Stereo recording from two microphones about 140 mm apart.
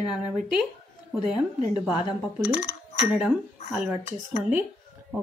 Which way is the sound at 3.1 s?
10° right (ahead or behind).